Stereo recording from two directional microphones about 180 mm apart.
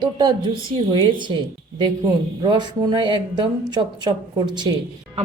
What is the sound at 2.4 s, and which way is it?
Speech, 25° right (ahead or behind).